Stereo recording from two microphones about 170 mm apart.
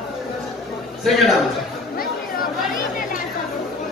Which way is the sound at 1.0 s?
Centre (ahead or behind).